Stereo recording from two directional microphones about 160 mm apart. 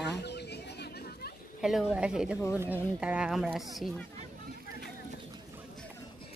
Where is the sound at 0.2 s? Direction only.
90° left.